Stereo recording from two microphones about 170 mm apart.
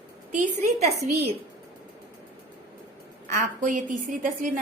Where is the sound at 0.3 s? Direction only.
45° right (ahead or behind).